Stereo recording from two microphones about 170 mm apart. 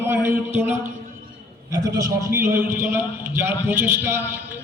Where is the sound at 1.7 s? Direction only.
20° right (ahead or behind).